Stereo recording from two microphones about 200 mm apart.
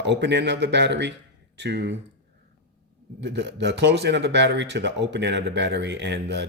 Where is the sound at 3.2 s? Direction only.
60° right (ahead or behind).